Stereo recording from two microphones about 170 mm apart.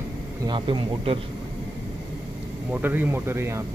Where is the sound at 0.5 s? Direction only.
30° right (ahead or behind).